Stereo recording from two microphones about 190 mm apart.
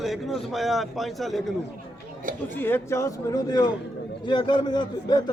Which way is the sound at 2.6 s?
10° left (ahead or behind).